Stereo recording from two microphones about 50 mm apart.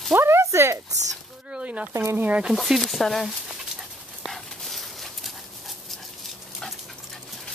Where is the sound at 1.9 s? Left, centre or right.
Right.